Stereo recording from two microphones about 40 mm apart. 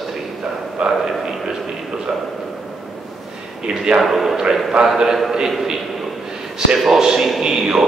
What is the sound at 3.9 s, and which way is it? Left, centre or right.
Speech, centre.